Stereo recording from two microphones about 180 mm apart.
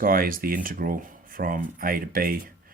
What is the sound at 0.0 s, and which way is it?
Speech, 55° right (ahead or behind).